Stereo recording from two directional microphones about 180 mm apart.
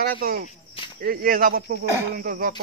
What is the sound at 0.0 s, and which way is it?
Speech, 55° right (ahead or behind).